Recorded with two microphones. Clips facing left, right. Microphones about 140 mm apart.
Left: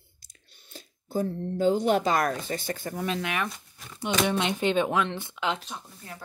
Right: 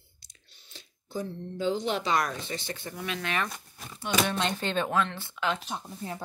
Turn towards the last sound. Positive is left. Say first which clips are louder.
# right 7 dB
turn(degrees=-25)  # may be behind; listen again after turning